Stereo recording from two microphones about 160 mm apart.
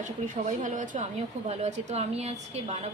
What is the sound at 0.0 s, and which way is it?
A woman's voice, 50° right (ahead or behind).